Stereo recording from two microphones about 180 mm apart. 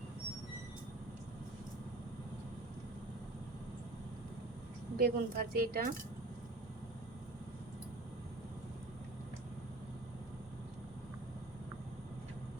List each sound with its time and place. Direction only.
4.9 s speech: 55° right (ahead or behind)